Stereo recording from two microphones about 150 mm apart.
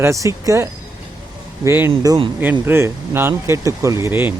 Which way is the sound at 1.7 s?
15° right (ahead or behind).